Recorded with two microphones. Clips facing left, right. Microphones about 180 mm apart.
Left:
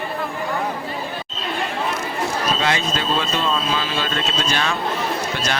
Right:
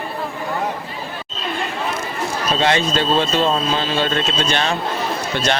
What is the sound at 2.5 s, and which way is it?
Speech, 30° right (ahead or behind).